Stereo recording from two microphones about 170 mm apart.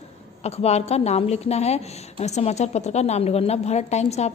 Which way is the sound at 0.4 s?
40° left (ahead or behind).